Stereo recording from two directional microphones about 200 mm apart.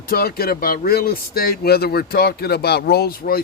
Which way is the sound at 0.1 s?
50° left (ahead or behind).